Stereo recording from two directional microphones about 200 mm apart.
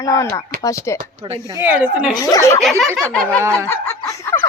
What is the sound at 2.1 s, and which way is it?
Speech, 15° left (ahead or behind).